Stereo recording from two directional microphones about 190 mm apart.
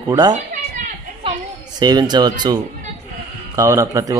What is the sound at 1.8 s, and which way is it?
Speech, 20° right (ahead or behind).